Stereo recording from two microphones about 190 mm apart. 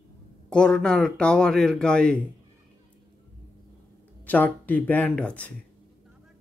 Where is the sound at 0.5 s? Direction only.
5° left (ahead or behind).